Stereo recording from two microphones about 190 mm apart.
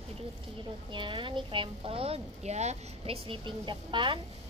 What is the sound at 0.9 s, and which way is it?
Speech, 25° right (ahead or behind).